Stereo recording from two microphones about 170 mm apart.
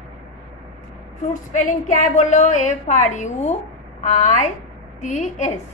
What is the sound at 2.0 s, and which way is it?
A woman's voice, 45° left (ahead or behind).